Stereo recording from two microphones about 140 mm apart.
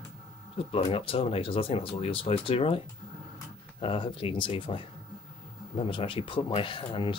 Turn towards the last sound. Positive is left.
turn(degrees=35)  # may be behind; listen again after turning